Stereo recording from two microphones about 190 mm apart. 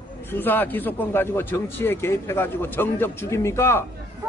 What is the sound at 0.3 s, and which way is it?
A man's voice, 10° left (ahead or behind).